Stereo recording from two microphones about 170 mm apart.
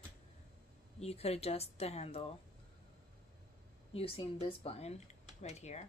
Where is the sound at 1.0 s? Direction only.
35° left (ahead or behind).